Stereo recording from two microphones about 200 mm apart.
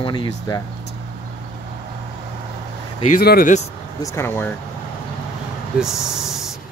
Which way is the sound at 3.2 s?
50° left (ahead or behind).